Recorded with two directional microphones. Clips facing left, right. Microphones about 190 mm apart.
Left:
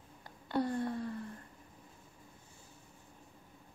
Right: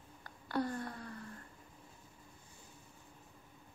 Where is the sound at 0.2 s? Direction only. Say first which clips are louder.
Left 3 dB; 25° left (ahead or behind).